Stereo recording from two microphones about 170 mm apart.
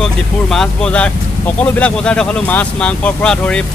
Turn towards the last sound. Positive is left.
turn(degrees=5)  # may be behind; listen again after turning